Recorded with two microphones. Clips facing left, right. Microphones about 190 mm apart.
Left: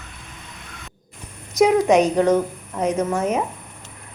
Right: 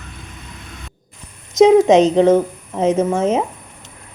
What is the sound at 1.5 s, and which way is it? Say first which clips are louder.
A woman's voice: right 6 dB; 25° right (ahead or behind).